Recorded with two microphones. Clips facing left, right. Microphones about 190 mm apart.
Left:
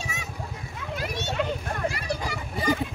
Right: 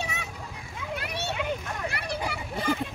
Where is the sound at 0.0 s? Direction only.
65° right (ahead or behind).